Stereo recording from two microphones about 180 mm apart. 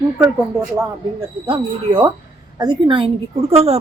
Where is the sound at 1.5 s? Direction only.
30° right (ahead or behind).